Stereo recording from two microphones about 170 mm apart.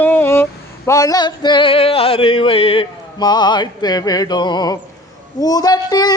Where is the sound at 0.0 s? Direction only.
10° left (ahead or behind).